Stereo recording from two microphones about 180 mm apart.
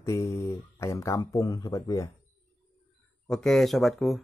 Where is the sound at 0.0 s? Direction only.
15° left (ahead or behind).